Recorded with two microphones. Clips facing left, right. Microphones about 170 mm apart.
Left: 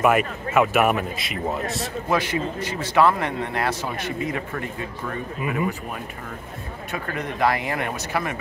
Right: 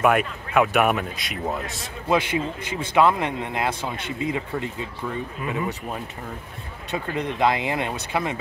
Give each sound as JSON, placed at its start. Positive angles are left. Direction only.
{"t": 0.0, "sound": "a man's voice", "side_deg": 0}
{"t": 2.0, "sound": "a man's voice", "side_deg": -15}
{"t": 6.9, "sound": "speech", "side_deg": -20}